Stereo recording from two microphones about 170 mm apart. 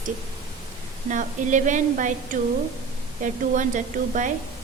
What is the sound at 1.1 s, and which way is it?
A woman's voice, 45° right (ahead or behind).